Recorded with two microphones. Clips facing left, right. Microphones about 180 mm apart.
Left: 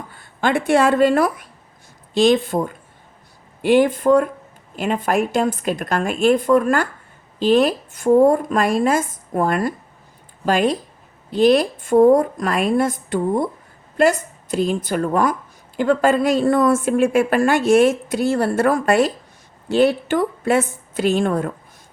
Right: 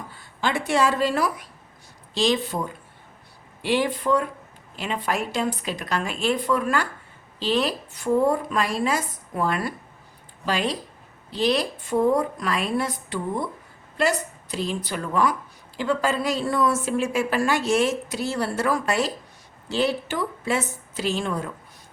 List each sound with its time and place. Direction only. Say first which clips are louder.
0.1 s a woman's voice: left 7 dB; 55° left (ahead or behind)